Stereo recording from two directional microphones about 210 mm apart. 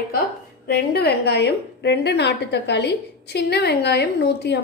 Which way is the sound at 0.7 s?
50° left (ahead or behind).